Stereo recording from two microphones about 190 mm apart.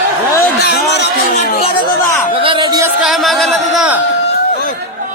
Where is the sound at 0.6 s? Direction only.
60° left (ahead or behind).